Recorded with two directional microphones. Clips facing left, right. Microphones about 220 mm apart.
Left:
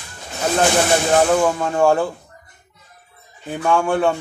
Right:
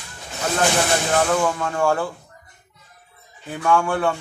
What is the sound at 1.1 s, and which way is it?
Speech, 25° left (ahead or behind).